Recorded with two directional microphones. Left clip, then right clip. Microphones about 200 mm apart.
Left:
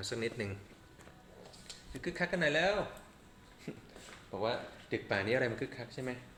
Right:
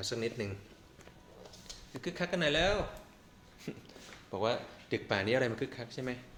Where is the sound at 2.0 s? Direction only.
15° right (ahead or behind).